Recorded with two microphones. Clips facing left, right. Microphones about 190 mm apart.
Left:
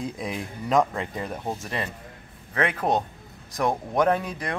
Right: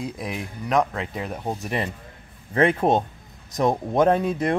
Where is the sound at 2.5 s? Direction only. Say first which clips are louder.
Right 5 dB; 30° right (ahead or behind).